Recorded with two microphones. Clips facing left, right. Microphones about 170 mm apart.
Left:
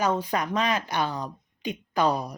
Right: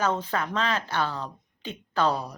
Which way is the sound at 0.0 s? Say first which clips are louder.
Left 1 dB; 15° left (ahead or behind).